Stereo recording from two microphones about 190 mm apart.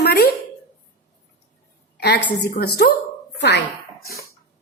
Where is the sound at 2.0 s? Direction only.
60° left (ahead or behind).